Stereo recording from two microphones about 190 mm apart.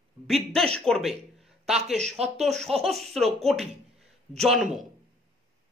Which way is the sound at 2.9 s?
Centre (ahead or behind).